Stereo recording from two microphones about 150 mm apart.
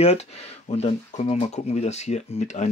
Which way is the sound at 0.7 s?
45° left (ahead or behind).